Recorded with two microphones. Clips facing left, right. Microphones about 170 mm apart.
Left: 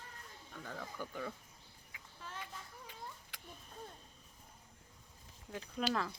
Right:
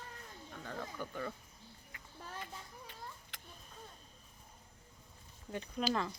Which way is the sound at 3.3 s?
10° left (ahead or behind).